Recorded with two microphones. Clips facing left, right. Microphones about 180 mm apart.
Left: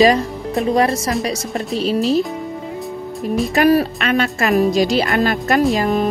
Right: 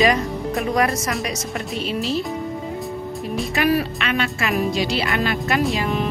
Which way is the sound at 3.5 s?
40° left (ahead or behind).